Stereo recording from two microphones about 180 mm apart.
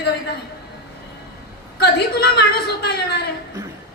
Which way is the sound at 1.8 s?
65° left (ahead or behind).